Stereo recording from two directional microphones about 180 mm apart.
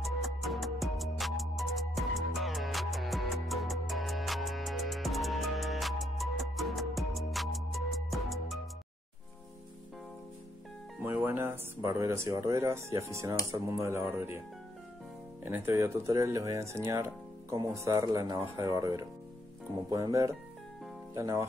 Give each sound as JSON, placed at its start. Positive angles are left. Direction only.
{"t": 0.0, "sound": "music", "side_deg": 0}
{"t": 11.0, "sound": "speech", "side_deg": -10}
{"t": 15.4, "sound": "speech", "side_deg": -10}